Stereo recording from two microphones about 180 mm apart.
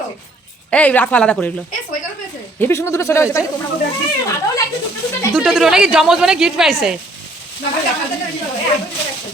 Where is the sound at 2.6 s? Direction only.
15° left (ahead or behind).